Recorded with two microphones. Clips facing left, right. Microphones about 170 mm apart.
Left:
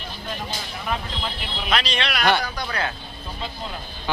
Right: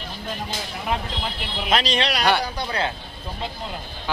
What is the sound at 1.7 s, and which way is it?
Speech, 40° right (ahead or behind).